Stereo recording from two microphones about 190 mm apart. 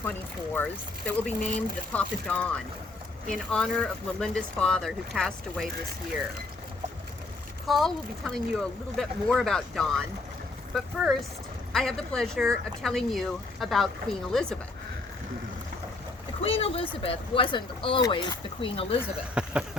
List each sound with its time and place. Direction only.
0.5 s speech: 5° left (ahead or behind)
7.7 s speech: centre (ahead or behind)
16.4 s speech: 30° left (ahead or behind)
19.3 s speech: 5° right (ahead or behind)